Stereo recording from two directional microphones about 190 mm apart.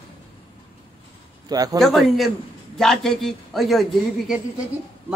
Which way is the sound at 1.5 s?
20° right (ahead or behind).